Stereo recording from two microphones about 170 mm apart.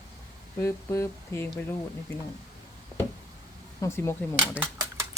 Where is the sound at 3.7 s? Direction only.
15° left (ahead or behind).